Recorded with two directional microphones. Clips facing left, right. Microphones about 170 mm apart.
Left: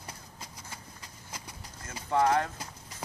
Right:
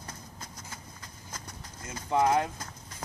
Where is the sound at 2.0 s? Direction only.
15° right (ahead or behind).